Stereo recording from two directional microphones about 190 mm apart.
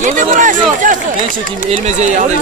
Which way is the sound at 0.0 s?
45° right (ahead or behind).